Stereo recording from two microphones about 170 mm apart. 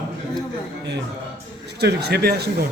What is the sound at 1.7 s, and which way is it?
Speech, 75° right (ahead or behind).